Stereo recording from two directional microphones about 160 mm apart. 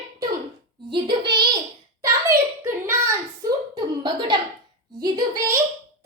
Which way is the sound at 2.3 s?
15° right (ahead or behind).